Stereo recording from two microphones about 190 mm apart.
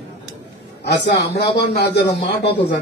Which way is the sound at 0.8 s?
65° left (ahead or behind).